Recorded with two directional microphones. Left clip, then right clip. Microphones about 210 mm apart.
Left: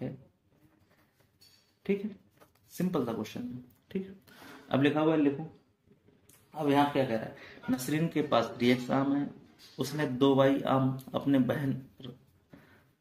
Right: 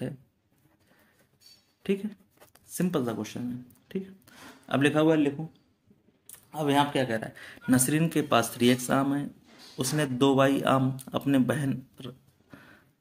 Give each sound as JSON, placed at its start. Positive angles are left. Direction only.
{"t": 2.8, "sound": "speech", "side_deg": -30}
{"t": 4.6, "sound": "speech", "side_deg": -35}
{"t": 6.5, "sound": "speech", "side_deg": -45}